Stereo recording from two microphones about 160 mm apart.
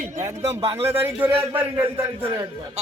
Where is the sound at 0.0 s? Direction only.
50° right (ahead or behind).